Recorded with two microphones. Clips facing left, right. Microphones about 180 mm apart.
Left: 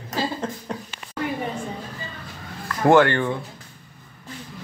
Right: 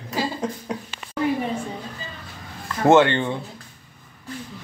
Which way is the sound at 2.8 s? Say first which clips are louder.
Even; 20° right (ahead or behind).